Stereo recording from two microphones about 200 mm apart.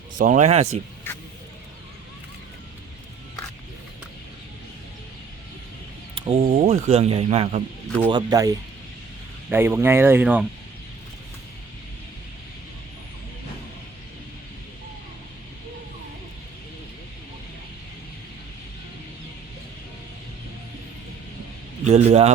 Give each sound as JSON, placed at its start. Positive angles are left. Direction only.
{"t": 0.2, "sound": "speech", "side_deg": -40}
{"t": 1.1, "sound": "vehicle", "side_deg": 10}
{"t": 6.1, "sound": "a sound", "side_deg": -25}
{"t": 6.4, "sound": "speech", "side_deg": -35}
{"t": 21.8, "sound": "speech", "side_deg": -35}